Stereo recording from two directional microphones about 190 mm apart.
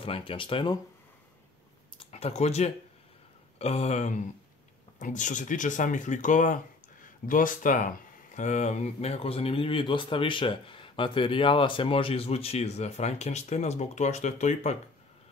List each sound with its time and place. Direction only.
0.0 s speech: 30° left (ahead or behind)
2.0 s a sound: 30° left (ahead or behind)
3.5 s speech: 35° left (ahead or behind)